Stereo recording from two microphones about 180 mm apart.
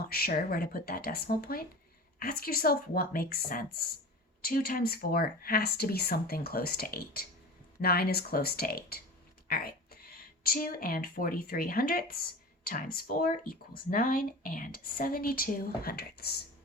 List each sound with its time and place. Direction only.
0.1 s speech: 55° left (ahead or behind)
9.5 s a sound: 55° left (ahead or behind)
10.4 s speech: 55° left (ahead or behind)